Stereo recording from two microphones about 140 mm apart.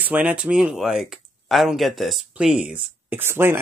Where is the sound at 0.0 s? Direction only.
10° right (ahead or behind).